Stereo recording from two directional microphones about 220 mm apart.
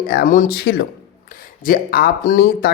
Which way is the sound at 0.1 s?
40° left (ahead or behind).